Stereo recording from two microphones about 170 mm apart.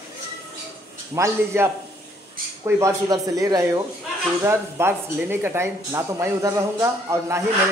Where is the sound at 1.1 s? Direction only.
15° right (ahead or behind).